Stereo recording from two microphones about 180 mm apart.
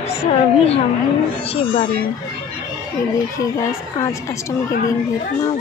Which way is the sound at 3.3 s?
20° left (ahead or behind).